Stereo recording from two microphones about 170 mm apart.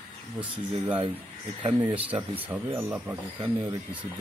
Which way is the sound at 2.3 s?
10° right (ahead or behind).